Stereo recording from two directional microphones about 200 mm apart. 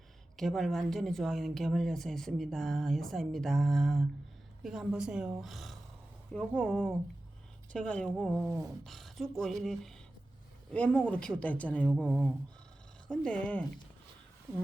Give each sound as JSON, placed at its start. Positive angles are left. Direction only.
{"t": 0.3, "sound": "a woman's voice", "side_deg": 0}
{"t": 8.4, "sound": "speech", "side_deg": -15}
{"t": 8.8, "sound": "a woman's voice", "side_deg": 0}